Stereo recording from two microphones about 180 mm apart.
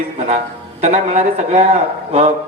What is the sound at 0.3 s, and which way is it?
A man's voice, 40° right (ahead or behind).